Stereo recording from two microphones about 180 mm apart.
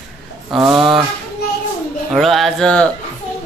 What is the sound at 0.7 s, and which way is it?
Speech, 5° right (ahead or behind).